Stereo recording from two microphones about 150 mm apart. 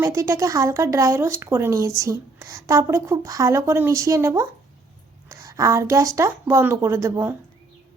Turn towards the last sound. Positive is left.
turn(degrees=-15)  # may be behind; listen again after turning